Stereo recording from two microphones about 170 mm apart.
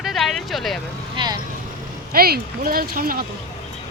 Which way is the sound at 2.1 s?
60° right (ahead or behind).